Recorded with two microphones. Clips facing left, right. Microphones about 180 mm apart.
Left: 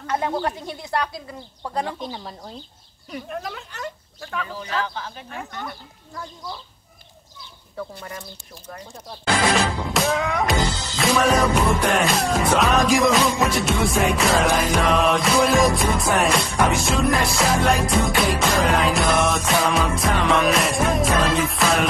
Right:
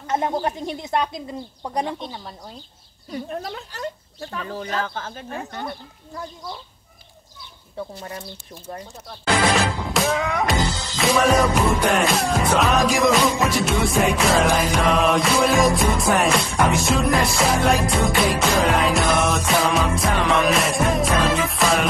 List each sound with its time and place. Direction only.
0.0 s speech: 20° right (ahead or behind)
2.0 s music: 5° left (ahead or behind)
3.1 s speech: 30° right (ahead or behind)
4.5 s speech: 45° right (ahead or behind); by 6.2 s 30° right (ahead or behind)
7.7 s speech: 25° right (ahead or behind)
9.9 s music: centre (ahead or behind)